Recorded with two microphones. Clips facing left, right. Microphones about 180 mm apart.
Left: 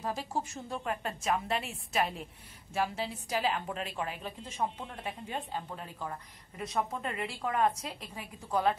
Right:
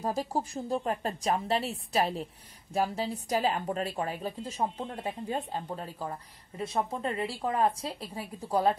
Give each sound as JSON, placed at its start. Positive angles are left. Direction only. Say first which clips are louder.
{"t": 0.0, "sound": "a woman's voice", "louder": "right 4 dB", "side_deg": -40}